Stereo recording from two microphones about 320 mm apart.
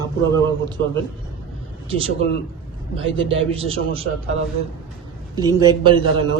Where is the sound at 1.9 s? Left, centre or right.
Centre.